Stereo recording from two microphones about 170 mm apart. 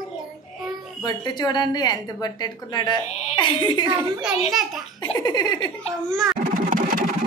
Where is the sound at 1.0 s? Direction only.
25° left (ahead or behind).